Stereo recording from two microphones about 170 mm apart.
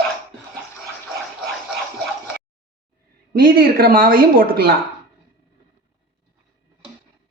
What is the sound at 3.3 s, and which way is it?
A man's voice, 60° right (ahead or behind).